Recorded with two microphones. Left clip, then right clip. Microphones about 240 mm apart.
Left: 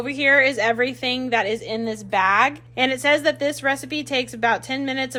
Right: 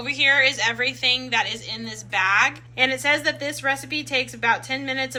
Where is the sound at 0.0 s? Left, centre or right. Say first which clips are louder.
Left 1 dB; left.